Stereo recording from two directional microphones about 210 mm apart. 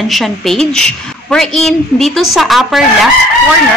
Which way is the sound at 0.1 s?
Centre (ahead or behind).